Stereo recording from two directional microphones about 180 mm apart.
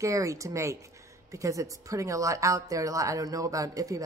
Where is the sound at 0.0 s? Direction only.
15° right (ahead or behind).